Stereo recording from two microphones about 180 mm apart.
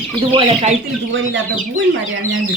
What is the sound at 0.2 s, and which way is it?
Speech, 30° right (ahead or behind).